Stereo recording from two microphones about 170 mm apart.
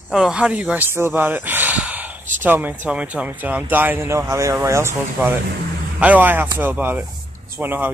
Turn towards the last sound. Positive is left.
turn(degrees=-10)  # may be behind; listen again after turning